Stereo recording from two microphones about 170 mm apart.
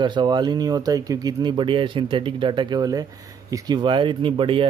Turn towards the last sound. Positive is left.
turn(degrees=-30)  # may be behind; listen again after turning